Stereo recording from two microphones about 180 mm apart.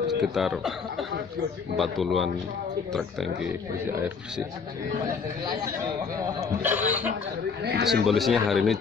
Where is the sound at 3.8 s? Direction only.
10° right (ahead or behind).